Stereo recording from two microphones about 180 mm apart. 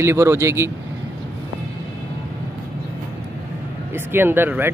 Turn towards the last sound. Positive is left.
turn(degrees=-10)  # may be behind; listen again after turning